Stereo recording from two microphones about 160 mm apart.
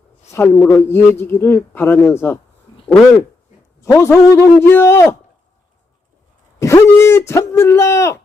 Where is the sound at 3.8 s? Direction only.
15° left (ahead or behind).